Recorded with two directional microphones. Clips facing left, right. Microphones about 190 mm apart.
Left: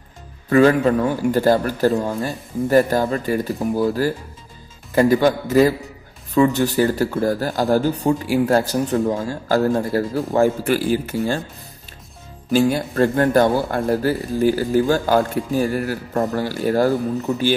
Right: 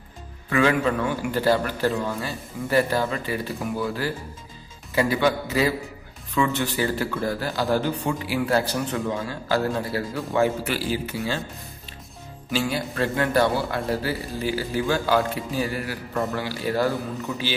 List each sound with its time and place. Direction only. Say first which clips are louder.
0.5 s a man's voice: left 7 dB; 40° left (ahead or behind)
12.4 s a man's voice: left 8 dB; 45° left (ahead or behind)